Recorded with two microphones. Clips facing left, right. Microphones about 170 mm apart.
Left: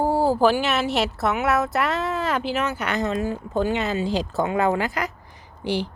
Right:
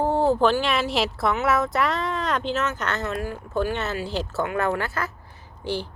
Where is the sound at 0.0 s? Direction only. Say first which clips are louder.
Left 1 dB; 5° left (ahead or behind).